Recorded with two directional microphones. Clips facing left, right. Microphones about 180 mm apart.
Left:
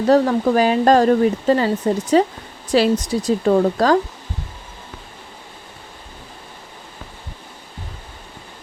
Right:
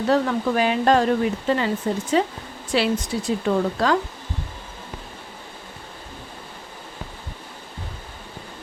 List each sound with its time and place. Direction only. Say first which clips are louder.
0.1 s speech: left 6 dB; 40° left (ahead or behind)